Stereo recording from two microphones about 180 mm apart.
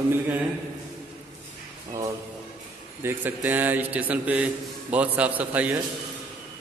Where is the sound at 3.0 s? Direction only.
10° right (ahead or behind).